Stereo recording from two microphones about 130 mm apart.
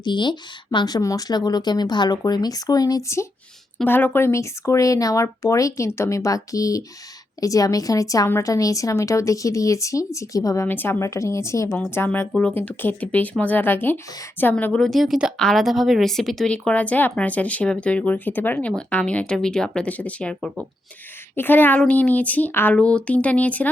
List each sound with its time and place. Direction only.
0.0 s a woman's voice: 35° left (ahead or behind); by 23.6 s 10° left (ahead or behind)